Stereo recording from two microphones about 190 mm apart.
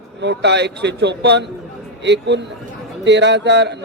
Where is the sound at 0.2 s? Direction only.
65° right (ahead or behind).